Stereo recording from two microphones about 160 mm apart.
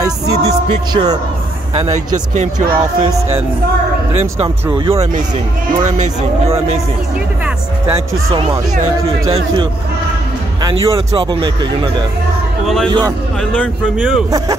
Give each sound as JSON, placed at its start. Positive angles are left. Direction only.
{"t": 0.0, "sound": "speech", "side_deg": -20}
{"t": 1.7, "sound": "speech", "side_deg": -45}
{"t": 4.6, "sound": "speech", "side_deg": -30}
{"t": 8.3, "sound": "speech", "side_deg": -35}
{"t": 12.6, "sound": "a man's voice", "side_deg": 5}